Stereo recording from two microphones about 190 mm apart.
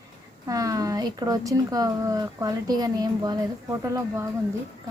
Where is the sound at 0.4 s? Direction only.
20° right (ahead or behind).